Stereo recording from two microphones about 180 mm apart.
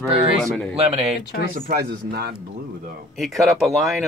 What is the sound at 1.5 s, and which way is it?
Speech, 50° right (ahead or behind).